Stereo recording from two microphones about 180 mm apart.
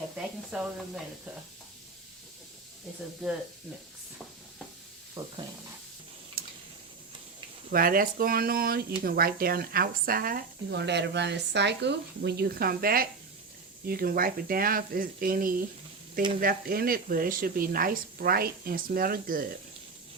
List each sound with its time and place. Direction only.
0.2 s speech: 5° right (ahead or behind)
5.2 s stir: 30° right (ahead or behind)
6.4 s a sound: 55° right (ahead or behind)
7.7 s speech: 50° right (ahead or behind)